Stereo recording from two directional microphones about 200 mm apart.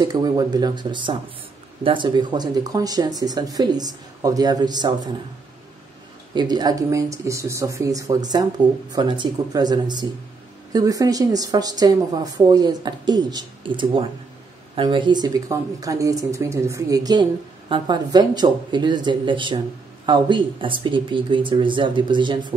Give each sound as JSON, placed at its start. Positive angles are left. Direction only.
{"t": 0.0, "sound": "speech", "side_deg": -20}
{"t": 6.3, "sound": "speech", "side_deg": -20}